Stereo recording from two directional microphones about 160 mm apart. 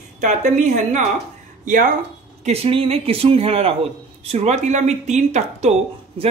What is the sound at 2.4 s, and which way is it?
Speech, 40° right (ahead or behind).